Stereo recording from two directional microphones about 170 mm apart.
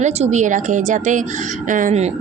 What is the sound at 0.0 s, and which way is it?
A woman's voice, 45° right (ahead or behind).